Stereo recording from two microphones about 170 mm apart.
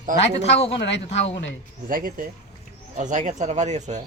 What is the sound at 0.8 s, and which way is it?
Speech, 90° left.